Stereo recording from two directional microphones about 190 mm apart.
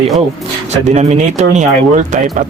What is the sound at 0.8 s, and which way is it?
Speech, 35° right (ahead or behind).